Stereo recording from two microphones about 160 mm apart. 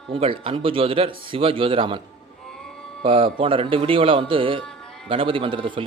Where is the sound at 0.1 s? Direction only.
35° right (ahead or behind).